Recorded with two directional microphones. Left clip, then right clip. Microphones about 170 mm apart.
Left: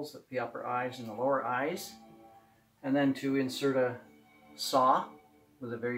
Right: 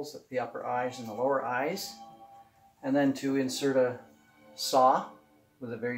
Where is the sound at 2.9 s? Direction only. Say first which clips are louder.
Right 2 dB; 25° left (ahead or behind).